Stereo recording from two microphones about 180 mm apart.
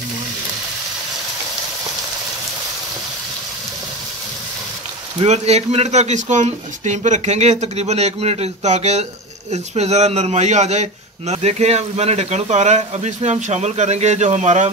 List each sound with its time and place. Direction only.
5.2 s a man's voice: 35° right (ahead or behind)